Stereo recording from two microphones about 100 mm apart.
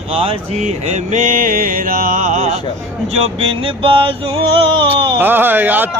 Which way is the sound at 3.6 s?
60° right (ahead or behind).